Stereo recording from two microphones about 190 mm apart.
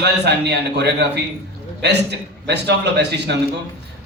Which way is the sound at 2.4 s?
60° right (ahead or behind).